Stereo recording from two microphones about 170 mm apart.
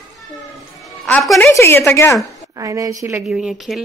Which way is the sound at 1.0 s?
Centre (ahead or behind).